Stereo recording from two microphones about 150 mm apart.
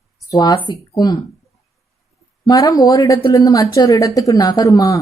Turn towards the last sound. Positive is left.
turn(degrees=20)  # may be behind; listen again after turning